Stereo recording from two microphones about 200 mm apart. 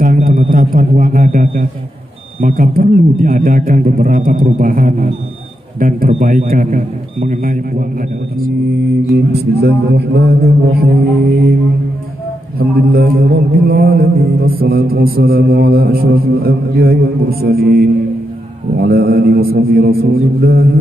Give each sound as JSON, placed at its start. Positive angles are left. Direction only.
{"t": 0.0, "sound": "a sound", "side_deg": -45}
{"t": 2.4, "sound": "mantra", "side_deg": -45}
{"t": 7.2, "sound": "speech", "side_deg": -40}
{"t": 9.1, "sound": "mantra", "side_deg": -55}
{"t": 12.5, "sound": "mantra", "side_deg": -50}